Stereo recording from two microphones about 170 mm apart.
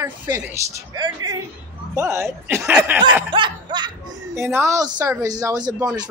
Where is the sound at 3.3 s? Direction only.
30° right (ahead or behind).